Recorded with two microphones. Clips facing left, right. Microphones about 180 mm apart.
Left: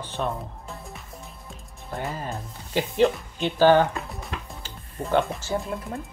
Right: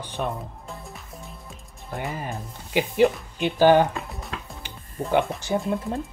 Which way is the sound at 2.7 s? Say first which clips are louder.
Right 1 dB; 10° right (ahead or behind).